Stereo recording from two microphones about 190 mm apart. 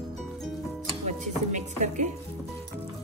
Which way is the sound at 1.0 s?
40° right (ahead or behind).